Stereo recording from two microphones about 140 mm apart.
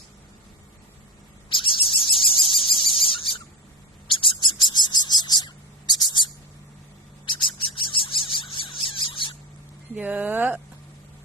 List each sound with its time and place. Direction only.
1.5 s bird: 35° left (ahead or behind)
9.9 s speech: 10° right (ahead or behind)